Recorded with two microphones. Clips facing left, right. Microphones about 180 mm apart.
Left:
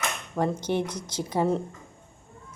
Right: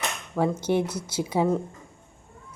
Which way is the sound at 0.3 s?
10° right (ahead or behind).